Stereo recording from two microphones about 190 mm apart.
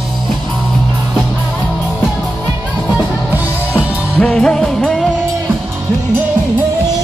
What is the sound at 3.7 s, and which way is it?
Music, 5° left (ahead or behind).